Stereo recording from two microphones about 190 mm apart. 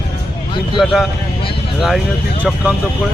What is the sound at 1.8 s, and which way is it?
Speech, centre (ahead or behind).